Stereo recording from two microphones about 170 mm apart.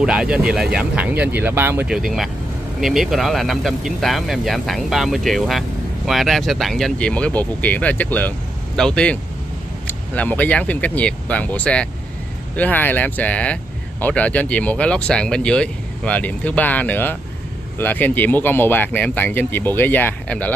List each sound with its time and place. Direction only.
0.0 s speech: 5° right (ahead or behind)